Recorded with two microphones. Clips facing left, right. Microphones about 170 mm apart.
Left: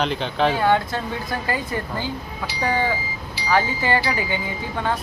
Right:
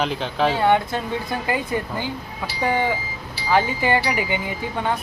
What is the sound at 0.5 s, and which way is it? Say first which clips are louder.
Speech: right 1 dB; 20° right (ahead or behind).